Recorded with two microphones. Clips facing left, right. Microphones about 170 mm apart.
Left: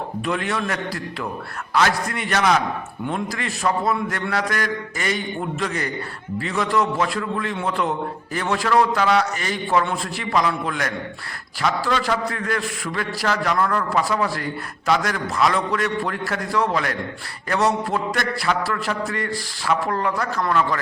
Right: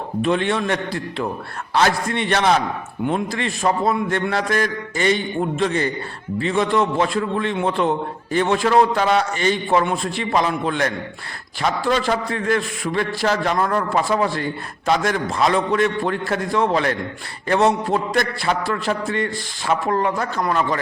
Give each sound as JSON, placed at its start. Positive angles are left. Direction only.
{"t": 0.2, "sound": "a man's voice", "side_deg": -25}